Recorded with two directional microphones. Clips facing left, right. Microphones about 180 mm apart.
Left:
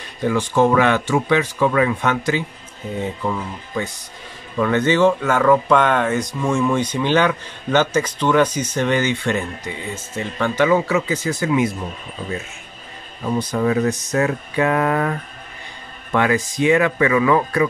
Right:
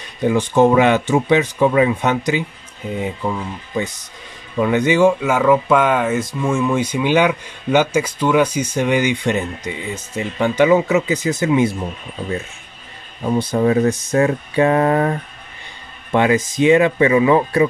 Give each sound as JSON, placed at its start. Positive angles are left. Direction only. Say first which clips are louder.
{"t": 0.2, "sound": "speech", "louder": "right 3 dB", "side_deg": -20}
{"t": 13.4, "sound": "speech", "louder": "right 3 dB", "side_deg": -30}